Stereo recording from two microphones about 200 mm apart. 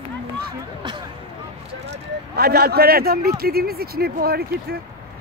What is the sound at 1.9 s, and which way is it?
Speech, 55° right (ahead or behind).